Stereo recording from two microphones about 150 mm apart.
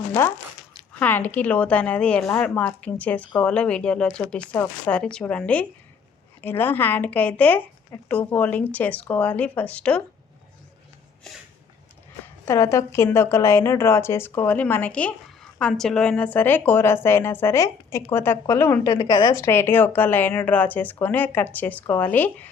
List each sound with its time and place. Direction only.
0.1 s a woman's voice: 15° left (ahead or behind)
12.2 s a woman's voice: 20° left (ahead or behind)
19.0 s a woman's voice: 30° left (ahead or behind)
19.4 s a woman's voice: 15° left (ahead or behind)